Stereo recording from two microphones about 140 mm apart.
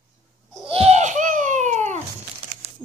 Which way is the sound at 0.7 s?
45° right (ahead or behind).